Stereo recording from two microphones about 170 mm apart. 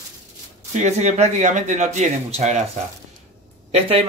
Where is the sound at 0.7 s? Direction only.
40° right (ahead or behind).